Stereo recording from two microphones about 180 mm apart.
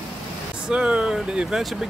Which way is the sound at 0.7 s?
5° right (ahead or behind).